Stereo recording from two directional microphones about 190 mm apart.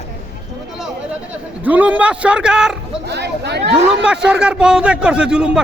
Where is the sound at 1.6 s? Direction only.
10° right (ahead or behind).